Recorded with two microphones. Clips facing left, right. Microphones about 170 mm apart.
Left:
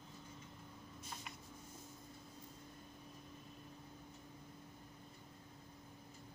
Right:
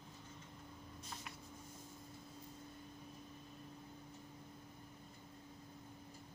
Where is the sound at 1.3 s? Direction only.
5° left (ahead or behind).